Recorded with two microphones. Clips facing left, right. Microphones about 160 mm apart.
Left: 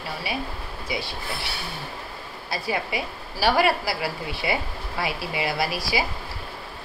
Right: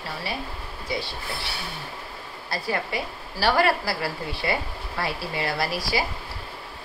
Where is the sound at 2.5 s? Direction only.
15° left (ahead or behind).